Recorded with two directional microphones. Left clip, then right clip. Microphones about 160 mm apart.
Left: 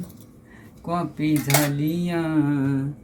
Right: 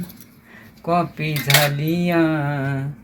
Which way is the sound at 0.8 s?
20° right (ahead or behind).